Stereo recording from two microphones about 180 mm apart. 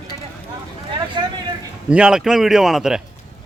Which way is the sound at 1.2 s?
25° right (ahead or behind).